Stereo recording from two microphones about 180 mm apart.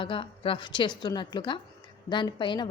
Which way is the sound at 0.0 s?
30° left (ahead or behind).